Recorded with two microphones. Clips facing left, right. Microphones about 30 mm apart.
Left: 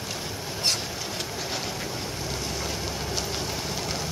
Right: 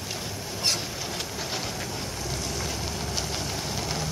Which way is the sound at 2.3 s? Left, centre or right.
Centre.